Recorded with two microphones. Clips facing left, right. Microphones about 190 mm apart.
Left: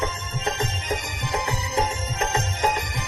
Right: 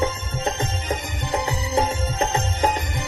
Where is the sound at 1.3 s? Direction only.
30° right (ahead or behind).